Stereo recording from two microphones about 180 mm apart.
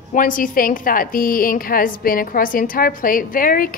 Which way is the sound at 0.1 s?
50° left (ahead or behind).